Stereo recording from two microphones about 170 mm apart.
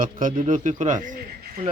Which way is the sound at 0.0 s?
50° right (ahead or behind).